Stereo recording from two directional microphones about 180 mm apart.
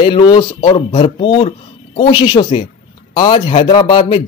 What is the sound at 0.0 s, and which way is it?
A man's voice, 25° left (ahead or behind).